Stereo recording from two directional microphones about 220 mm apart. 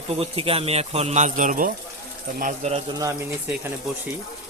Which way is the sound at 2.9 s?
15° right (ahead or behind).